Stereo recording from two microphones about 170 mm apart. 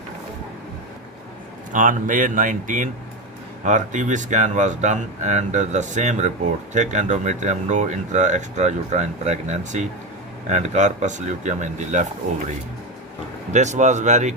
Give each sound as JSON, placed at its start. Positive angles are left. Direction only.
{"t": 1.7, "sound": "speech", "side_deg": -50}
{"t": 13.5, "sound": "speech", "side_deg": -45}